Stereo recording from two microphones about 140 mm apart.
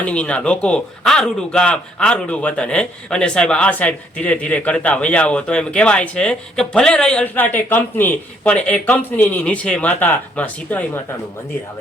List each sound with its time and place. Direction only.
0.0 s a man's voice: 10° left (ahead or behind)